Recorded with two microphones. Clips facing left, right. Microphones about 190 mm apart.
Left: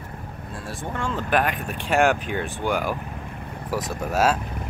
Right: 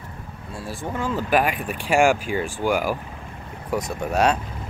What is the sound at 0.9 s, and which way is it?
Speech, 5° right (ahead or behind).